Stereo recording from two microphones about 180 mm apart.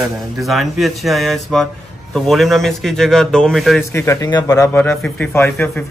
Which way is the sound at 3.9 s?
15° left (ahead or behind).